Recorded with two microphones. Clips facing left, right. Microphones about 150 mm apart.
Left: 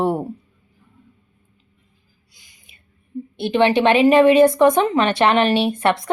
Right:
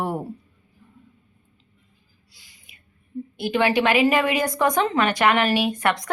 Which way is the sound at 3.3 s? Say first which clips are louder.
Left 4 dB; 25° left (ahead or behind).